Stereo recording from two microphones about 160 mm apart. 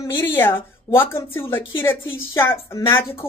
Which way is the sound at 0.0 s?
15° left (ahead or behind).